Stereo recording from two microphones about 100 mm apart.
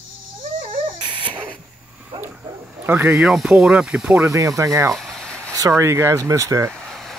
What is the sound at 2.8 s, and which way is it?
Speech, 20° right (ahead or behind).